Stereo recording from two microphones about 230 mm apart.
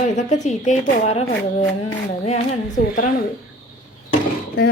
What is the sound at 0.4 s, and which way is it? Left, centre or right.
A woman's voice, left.